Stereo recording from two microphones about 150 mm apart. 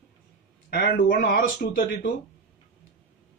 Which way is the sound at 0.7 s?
90° left.